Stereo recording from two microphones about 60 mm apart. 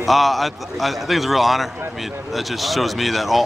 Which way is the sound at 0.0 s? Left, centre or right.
Centre.